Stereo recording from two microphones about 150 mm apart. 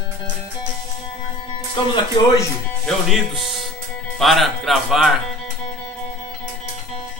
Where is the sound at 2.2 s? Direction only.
30° left (ahead or behind).